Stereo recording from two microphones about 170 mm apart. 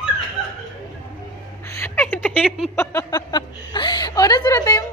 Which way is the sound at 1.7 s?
15° left (ahead or behind).